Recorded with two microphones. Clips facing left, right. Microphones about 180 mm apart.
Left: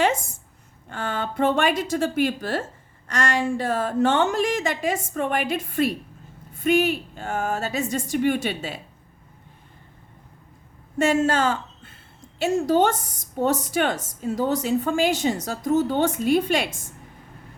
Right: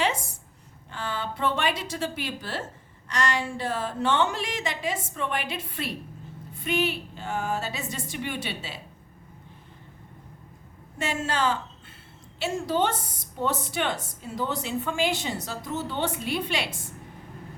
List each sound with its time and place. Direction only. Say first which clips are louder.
0.0 s a sound: left 5 dB; 50° left (ahead or behind)
0.9 s a woman's voice: left 4 dB; 50° left (ahead or behind)
10.9 s a woman's voice: left 9 dB; 45° left (ahead or behind)